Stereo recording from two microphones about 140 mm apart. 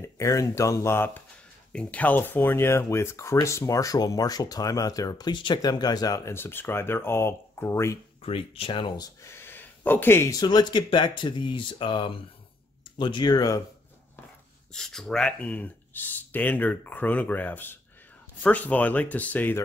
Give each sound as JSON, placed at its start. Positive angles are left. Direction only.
{"t": 0.0, "sound": "speech", "side_deg": 20}
{"t": 8.2, "sound": "speech", "side_deg": 40}
{"t": 9.3, "sound": "speech", "side_deg": 15}
{"t": 14.7, "sound": "speech", "side_deg": 5}